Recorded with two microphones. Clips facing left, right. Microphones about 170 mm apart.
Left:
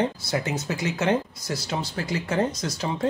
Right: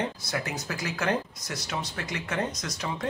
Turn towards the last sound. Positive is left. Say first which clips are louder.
# left 6 dB
turn(degrees=30)  # may be behind; listen again after turning